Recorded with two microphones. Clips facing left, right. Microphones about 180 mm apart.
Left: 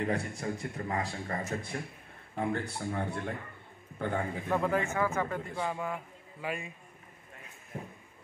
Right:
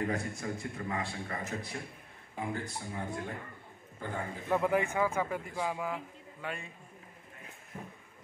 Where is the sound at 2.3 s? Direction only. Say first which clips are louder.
Left 4 dB; 65° left (ahead or behind).